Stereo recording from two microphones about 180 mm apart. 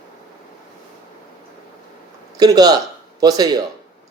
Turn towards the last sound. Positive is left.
turn(degrees=-20)  # may be behind; listen again after turning